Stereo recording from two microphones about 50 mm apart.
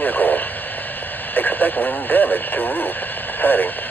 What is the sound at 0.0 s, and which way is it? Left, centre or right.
Radio, left.